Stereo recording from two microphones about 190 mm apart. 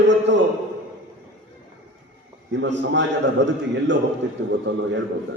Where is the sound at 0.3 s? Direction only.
70° right (ahead or behind).